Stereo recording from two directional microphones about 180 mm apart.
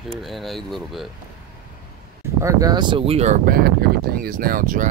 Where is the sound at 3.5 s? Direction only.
55° right (ahead or behind).